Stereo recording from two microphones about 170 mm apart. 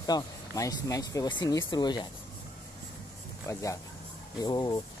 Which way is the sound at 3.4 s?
20° left (ahead or behind).